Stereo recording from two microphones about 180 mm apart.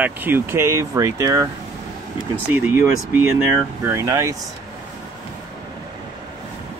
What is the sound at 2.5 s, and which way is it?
Speech, 10° right (ahead or behind).